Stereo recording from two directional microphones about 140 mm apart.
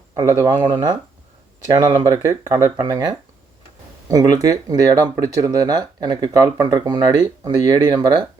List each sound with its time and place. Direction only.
0.1 s speech: 25° right (ahead or behind)
2.0 s speech: 25° right (ahead or behind)